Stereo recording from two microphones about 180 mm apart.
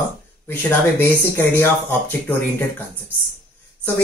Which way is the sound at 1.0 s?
15° left (ahead or behind).